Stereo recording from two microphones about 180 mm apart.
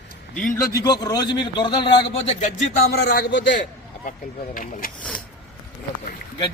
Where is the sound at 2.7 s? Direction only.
60° left (ahead or behind); by 3.7 s 80° left.